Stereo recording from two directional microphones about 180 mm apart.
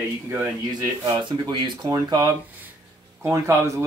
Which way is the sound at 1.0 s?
25° right (ahead or behind).